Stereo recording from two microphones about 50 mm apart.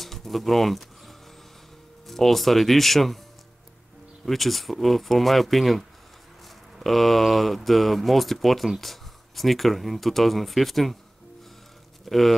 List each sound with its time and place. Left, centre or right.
0.0 s a sound: centre
2.0 s speech: centre
4.3 s speech: centre
12.0 s speech: centre